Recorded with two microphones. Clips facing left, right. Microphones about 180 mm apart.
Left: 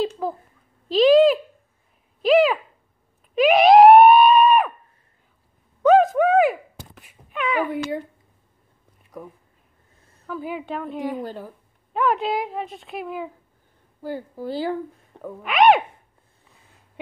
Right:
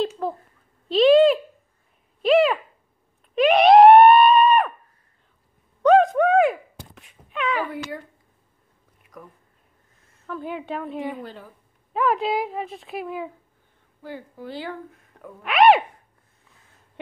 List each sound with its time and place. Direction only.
0.0 s a sound: centre (ahead or behind)
3.3 s screaming: centre (ahead or behind)
5.8 s wail: 5° left (ahead or behind)
9.1 s a sound: 30° left (ahead or behind)
10.2 s a woman's voice: 5° left (ahead or behind)
14.0 s a woman's voice: 40° left (ahead or behind)
15.4 s speech: centre (ahead or behind)